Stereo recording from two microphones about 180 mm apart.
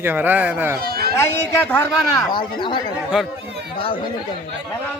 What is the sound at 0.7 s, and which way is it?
Speech, 60° right (ahead or behind).